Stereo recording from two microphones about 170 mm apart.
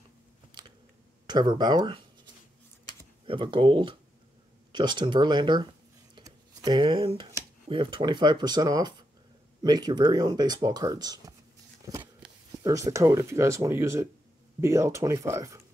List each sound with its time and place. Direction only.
0.5 s biting: 25° right (ahead or behind)
1.2 s speech: 25° right (ahead or behind)
3.3 s speech: 30° right (ahead or behind)
6.1 s a sound: 25° right (ahead or behind)
7.6 s speech: 30° right (ahead or behind)
12.6 s speech: 20° right (ahead or behind)